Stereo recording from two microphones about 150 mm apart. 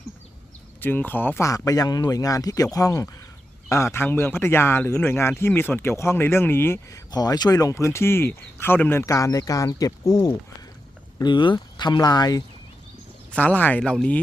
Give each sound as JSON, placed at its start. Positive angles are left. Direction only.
{"t": 0.8, "sound": "speech", "side_deg": 15}
{"t": 7.1, "sound": "speech", "side_deg": 25}
{"t": 11.2, "sound": "speech", "side_deg": 30}
{"t": 13.3, "sound": "speech", "side_deg": 10}